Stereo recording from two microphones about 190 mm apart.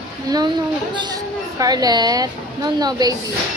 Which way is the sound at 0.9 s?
20° right (ahead or behind).